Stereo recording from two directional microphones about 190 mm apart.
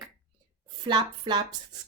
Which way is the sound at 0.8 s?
25° right (ahead or behind).